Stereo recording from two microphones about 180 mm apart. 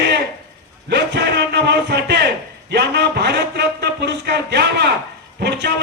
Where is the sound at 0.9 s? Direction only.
70° right (ahead or behind).